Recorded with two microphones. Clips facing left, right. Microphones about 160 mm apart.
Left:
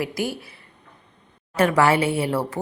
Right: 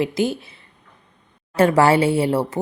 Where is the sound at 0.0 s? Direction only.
25° right (ahead or behind).